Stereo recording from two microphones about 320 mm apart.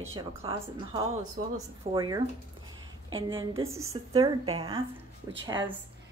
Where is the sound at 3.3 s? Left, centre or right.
Centre.